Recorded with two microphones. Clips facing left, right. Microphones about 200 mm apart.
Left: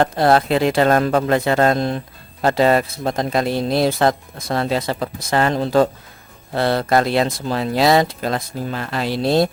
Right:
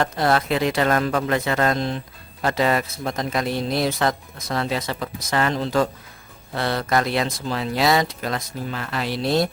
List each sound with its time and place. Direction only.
0.0 s speech: 30° left (ahead or behind)
1.7 s speech: 45° left (ahead or behind)
2.4 s speech: 30° left (ahead or behind)
7.4 s speech: 45° left (ahead or behind)
7.8 s speech: 25° left (ahead or behind)